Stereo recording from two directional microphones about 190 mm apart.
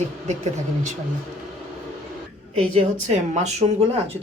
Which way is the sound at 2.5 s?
35° right (ahead or behind).